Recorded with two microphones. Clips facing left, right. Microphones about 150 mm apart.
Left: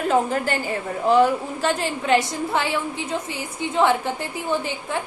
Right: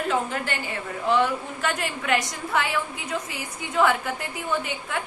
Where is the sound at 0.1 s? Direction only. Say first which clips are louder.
Left 6 dB; 40° left (ahead or behind).